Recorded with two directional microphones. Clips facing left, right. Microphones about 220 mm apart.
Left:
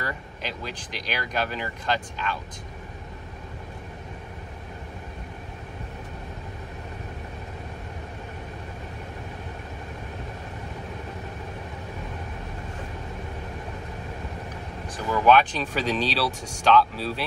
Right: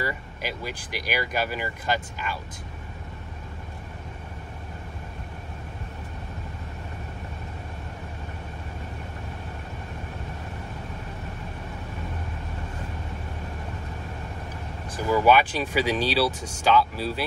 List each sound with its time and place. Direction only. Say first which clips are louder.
0.0 s speech: right 2 dB; 10° right (ahead or behind)
15.0 s speech: even; 10° right (ahead or behind)